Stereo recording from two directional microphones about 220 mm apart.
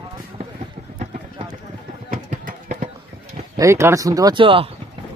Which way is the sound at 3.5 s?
15° right (ahead or behind).